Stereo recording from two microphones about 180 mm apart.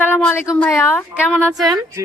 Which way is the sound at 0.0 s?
10° left (ahead or behind).